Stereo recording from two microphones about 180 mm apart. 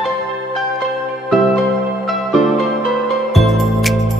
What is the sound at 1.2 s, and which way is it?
Music, centre (ahead or behind).